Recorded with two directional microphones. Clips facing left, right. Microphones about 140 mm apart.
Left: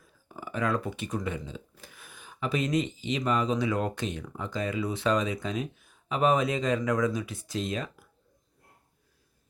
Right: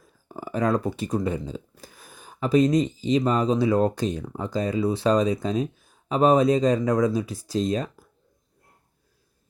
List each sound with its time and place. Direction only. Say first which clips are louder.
0.3 s speech: right 6 dB; 40° right (ahead or behind)